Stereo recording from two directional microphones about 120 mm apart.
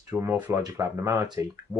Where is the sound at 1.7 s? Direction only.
10° right (ahead or behind).